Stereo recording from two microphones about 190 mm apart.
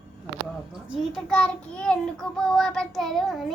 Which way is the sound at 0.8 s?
Centre (ahead or behind).